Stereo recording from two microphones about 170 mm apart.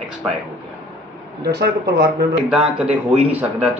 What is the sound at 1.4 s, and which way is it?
Speech, 70° right (ahead or behind).